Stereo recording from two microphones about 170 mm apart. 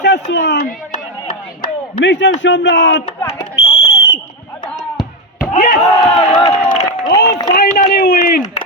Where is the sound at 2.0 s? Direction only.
90° left.